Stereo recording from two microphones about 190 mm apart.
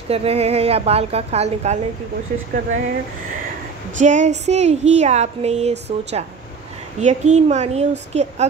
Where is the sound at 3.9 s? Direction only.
40° right (ahead or behind).